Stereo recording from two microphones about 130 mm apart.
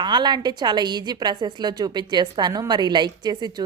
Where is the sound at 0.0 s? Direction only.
35° right (ahead or behind).